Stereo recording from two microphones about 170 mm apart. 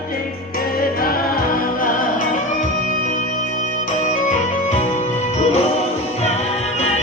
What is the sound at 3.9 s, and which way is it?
Music, 50° left (ahead or behind).